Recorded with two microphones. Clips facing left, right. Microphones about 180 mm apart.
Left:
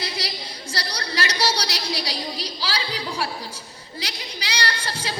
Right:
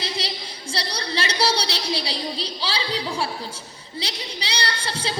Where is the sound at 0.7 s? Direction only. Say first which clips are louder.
Right 2 dB; 30° right (ahead or behind).